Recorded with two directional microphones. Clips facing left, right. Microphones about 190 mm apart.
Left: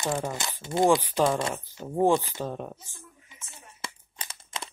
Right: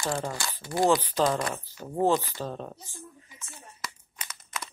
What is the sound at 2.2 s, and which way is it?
Speech, 15° left (ahead or behind).